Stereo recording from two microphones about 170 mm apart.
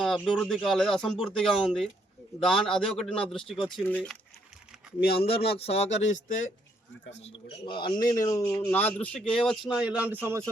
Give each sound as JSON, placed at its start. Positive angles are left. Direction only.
{"t": 0.0, "sound": "speech", "side_deg": 0}
{"t": 5.1, "sound": "speech", "side_deg": 35}